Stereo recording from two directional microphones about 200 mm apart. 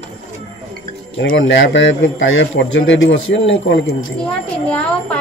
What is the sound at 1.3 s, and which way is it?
A man's voice, 65° left (ahead or behind).